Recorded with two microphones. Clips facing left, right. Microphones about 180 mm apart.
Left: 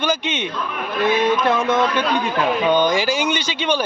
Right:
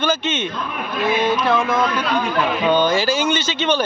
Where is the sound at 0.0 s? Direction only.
15° left (ahead or behind).